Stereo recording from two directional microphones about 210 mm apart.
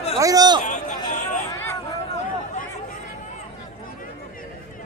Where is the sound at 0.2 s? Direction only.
15° right (ahead or behind).